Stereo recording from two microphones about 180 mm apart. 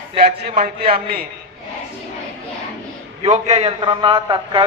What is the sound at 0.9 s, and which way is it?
Speech, 55° right (ahead or behind).